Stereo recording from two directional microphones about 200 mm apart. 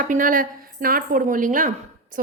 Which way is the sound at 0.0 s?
45° right (ahead or behind).